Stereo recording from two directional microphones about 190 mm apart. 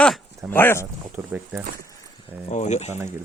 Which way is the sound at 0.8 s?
10° right (ahead or behind).